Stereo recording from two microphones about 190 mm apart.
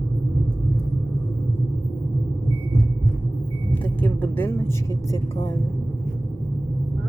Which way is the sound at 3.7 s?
10° left (ahead or behind).